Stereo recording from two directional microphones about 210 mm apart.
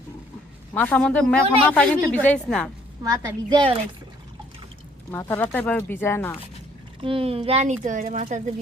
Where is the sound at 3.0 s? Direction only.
15° right (ahead or behind).